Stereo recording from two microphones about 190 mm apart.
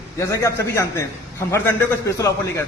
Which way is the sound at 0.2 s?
15° left (ahead or behind).